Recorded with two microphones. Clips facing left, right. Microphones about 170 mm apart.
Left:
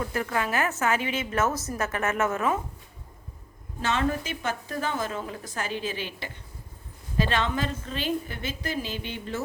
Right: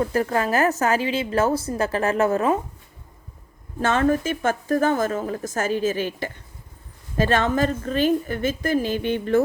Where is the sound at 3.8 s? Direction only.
50° right (ahead or behind).